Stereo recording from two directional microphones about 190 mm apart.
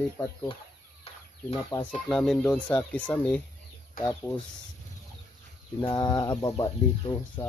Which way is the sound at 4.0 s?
45° left (ahead or behind).